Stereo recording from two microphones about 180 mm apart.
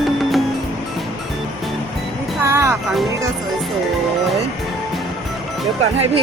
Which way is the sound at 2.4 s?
15° right (ahead or behind).